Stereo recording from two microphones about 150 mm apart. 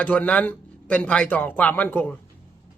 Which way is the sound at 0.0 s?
10° left (ahead or behind).